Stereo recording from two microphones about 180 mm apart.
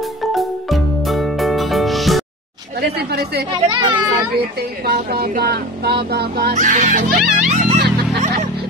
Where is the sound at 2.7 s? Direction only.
60° right (ahead or behind).